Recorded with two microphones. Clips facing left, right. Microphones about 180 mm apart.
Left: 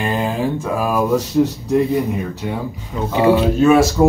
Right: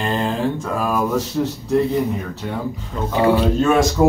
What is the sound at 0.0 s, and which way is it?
Speech, 5° left (ahead or behind).